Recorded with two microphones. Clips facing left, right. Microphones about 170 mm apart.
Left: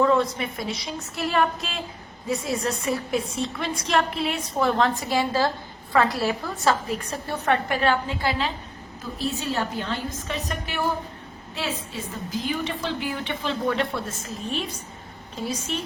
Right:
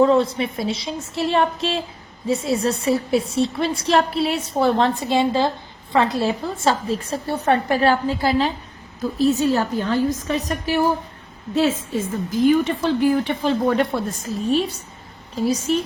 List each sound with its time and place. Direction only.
0.0 s a woman's voice: 30° right (ahead or behind)
15.7 s a woman's voice: 40° right (ahead or behind)